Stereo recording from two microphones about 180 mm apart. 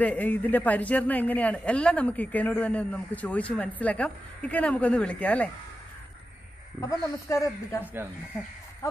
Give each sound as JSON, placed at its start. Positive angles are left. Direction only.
{"t": 0.0, "sound": "speech", "side_deg": 10}
{"t": 6.8, "sound": "speech", "side_deg": 15}
{"t": 7.8, "sound": "speech", "side_deg": -10}